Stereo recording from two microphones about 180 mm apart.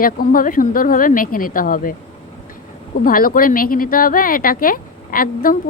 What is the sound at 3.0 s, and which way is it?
A woman's voice, 50° left (ahead or behind).